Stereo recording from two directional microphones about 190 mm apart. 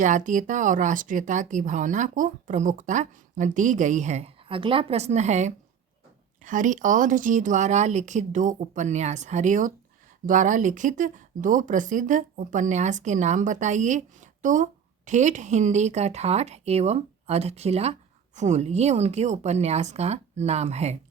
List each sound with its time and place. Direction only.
0.0 s speech: 40° right (ahead or behind)